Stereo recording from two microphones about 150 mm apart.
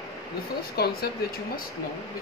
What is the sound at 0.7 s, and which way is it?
Speech, 90° left.